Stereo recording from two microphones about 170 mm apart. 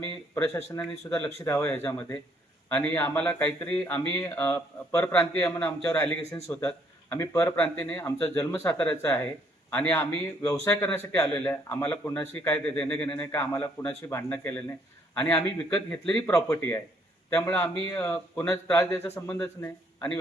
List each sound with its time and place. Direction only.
0.0 s a man's voice: 15° left (ahead or behind)